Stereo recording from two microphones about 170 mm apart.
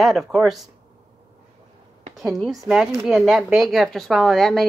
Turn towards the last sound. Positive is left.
turn(degrees=0)  # may be behind; listen again after turning